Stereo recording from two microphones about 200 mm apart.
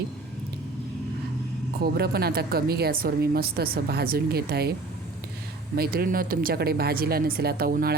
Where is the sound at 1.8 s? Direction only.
50° right (ahead or behind).